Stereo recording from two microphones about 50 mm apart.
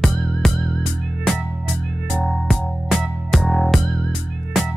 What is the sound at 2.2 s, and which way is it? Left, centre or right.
Music, centre.